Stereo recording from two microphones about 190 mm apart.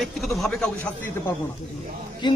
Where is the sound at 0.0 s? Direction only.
Centre (ahead or behind).